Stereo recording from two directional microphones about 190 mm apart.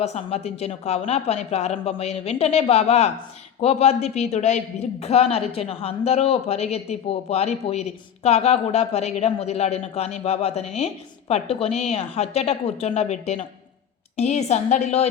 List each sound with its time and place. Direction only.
0.0 s a woman's voice: 35° left (ahead or behind)